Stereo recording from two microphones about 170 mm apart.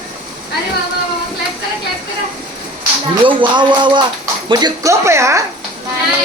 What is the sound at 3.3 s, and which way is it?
Speech, 25° right (ahead or behind).